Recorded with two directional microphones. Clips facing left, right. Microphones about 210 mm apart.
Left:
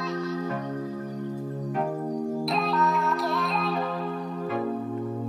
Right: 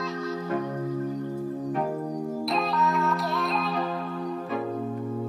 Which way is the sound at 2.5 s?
Centre (ahead or behind).